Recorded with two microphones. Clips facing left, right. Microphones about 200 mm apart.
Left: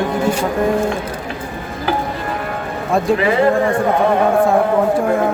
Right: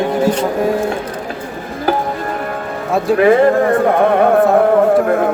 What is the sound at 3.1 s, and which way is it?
Speech, 55° right (ahead or behind).